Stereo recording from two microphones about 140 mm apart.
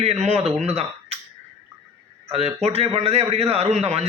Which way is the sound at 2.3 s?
50° right (ahead or behind).